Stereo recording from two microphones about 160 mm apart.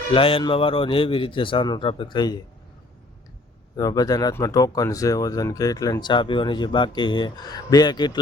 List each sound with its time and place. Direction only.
0.1 s speech: 35° left (ahead or behind)
3.8 s speech: 25° left (ahead or behind)